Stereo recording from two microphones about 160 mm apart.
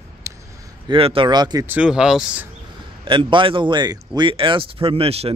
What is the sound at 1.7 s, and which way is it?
Speech, 5° right (ahead or behind).